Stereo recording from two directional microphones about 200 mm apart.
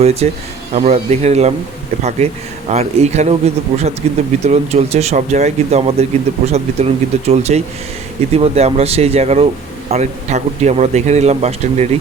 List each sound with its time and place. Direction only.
0.0 s speech: 30° right (ahead or behind)